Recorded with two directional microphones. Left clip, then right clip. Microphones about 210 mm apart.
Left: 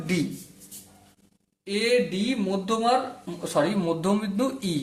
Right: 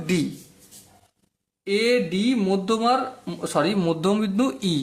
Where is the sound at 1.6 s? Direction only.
40° right (ahead or behind).